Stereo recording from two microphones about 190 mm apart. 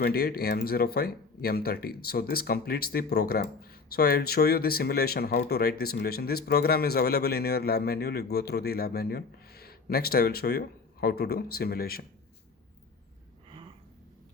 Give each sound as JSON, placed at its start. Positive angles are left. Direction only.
{"t": 0.0, "sound": "speech", "side_deg": 55}